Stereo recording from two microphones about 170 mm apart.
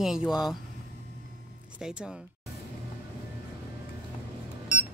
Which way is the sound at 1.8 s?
5° right (ahead or behind).